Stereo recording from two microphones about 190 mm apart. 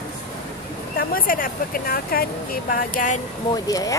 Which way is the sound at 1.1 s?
50° left (ahead or behind).